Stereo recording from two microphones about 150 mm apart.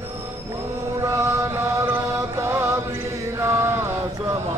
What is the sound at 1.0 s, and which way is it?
Mantra, 20° right (ahead or behind).